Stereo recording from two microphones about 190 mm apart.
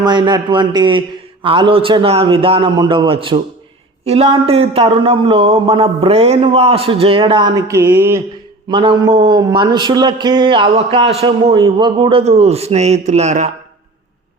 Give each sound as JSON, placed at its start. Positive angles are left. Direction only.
{"t": 0.0, "sound": "a man's voice", "side_deg": -20}
{"t": 8.7, "sound": "a man's voice", "side_deg": -25}